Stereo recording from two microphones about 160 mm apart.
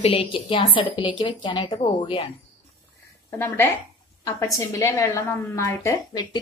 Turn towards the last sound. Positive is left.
turn(degrees=20)  # may be behind; listen again after turning